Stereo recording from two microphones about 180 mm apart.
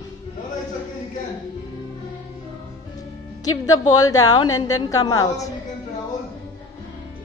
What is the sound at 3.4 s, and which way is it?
A woman's voice, 20° left (ahead or behind).